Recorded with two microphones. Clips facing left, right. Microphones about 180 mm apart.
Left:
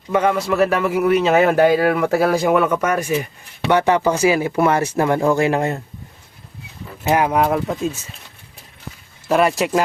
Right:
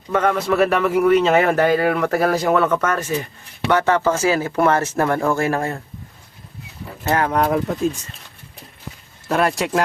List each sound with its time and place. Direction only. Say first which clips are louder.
0.1 s speech: left 1 dB; 10° left (ahead or behind)
7.1 s speech: left 2 dB; 10° left (ahead or behind)
9.3 s speech: left 3 dB; centre (ahead or behind)